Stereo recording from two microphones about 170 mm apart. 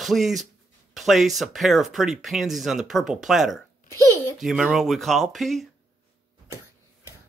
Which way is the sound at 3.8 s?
20° right (ahead or behind).